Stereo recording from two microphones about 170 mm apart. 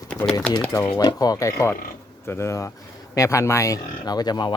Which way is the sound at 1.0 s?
25° left (ahead or behind).